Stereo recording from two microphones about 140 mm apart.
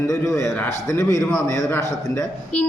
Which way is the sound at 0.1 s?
25° left (ahead or behind).